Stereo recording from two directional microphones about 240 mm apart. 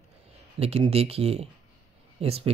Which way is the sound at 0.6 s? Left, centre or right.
Right.